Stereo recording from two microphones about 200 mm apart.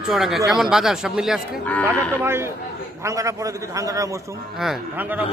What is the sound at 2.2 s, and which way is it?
A man's voice, 10° right (ahead or behind).